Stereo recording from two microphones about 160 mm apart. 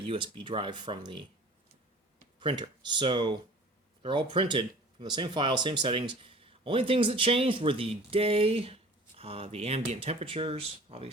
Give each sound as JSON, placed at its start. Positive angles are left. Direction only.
{"t": 0.0, "sound": "speech", "side_deg": -30}
{"t": 2.4, "sound": "speech", "side_deg": -30}